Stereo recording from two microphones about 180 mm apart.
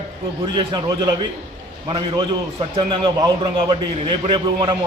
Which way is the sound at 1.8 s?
25° right (ahead or behind).